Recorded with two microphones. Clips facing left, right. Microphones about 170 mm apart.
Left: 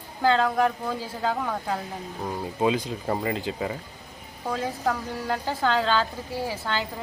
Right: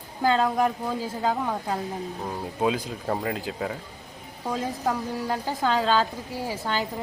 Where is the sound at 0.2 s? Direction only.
15° right (ahead or behind).